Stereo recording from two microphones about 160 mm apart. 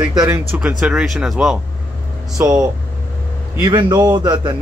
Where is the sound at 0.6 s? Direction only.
5° right (ahead or behind).